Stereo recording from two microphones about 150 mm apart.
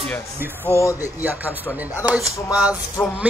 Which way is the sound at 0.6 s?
20° left (ahead or behind).